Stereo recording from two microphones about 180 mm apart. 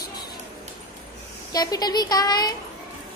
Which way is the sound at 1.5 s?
20° left (ahead or behind).